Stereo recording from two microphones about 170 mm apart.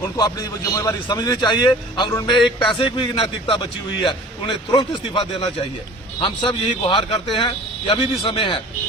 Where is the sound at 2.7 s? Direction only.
30° left (ahead or behind).